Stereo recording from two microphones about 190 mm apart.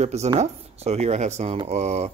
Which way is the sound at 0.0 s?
35° right (ahead or behind).